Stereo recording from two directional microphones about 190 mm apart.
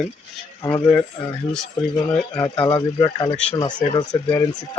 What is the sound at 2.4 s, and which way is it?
Speech, 20° left (ahead or behind).